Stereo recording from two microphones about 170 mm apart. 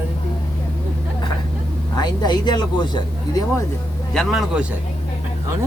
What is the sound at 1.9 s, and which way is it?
Speech, 25° left (ahead or behind).